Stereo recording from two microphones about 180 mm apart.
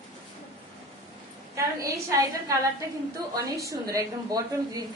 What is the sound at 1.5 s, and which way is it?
Speech, 15° right (ahead or behind).